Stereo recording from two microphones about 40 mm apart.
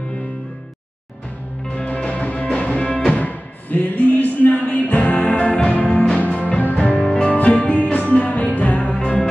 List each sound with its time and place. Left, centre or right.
1.9 s music: left
3.1 s music: left
5.2 s music: left
7.1 s music: left